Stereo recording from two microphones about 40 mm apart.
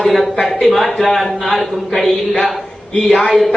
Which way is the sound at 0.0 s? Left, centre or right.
Centre.